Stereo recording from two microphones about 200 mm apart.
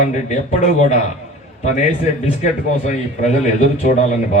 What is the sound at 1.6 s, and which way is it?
Speech, 35° left (ahead or behind).